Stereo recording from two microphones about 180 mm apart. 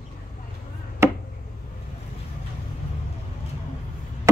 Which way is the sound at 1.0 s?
15° right (ahead or behind).